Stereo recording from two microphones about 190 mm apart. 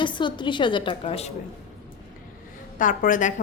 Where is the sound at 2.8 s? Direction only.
45° left (ahead or behind).